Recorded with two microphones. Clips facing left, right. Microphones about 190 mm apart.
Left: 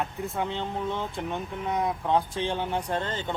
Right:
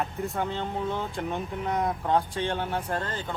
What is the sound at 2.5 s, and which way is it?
Speech, 20° left (ahead or behind).